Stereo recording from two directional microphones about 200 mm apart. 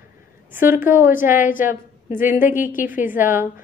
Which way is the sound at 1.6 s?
10° right (ahead or behind).